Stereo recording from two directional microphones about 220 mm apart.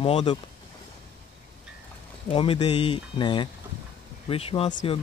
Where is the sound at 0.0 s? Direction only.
25° left (ahead or behind).